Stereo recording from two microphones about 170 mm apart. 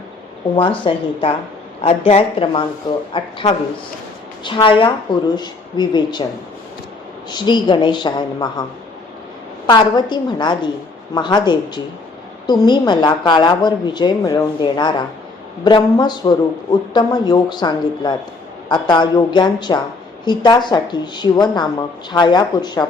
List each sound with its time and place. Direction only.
0.9 s a woman's voice: 35° left (ahead or behind)
7.3 s a woman's voice: 25° left (ahead or behind)
9.6 s a woman's voice: 25° left (ahead or behind)